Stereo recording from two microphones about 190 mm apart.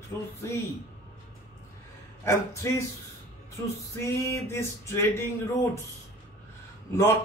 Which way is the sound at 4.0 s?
15° left (ahead or behind).